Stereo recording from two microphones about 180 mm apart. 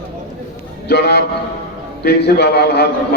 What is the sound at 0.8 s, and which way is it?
A man's voice, 65° left (ahead or behind).